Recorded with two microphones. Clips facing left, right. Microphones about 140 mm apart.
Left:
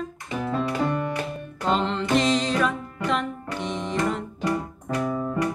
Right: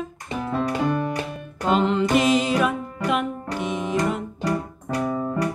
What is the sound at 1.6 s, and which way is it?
Music, 10° right (ahead or behind).